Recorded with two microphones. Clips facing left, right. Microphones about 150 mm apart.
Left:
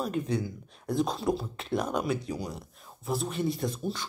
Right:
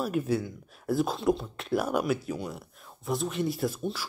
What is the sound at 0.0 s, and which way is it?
Speech, 5° right (ahead or behind).